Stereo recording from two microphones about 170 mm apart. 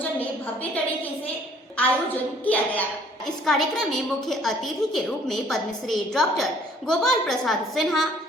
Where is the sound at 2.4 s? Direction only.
10° left (ahead or behind).